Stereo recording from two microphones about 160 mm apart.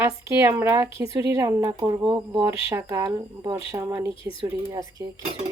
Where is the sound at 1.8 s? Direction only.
30° right (ahead or behind).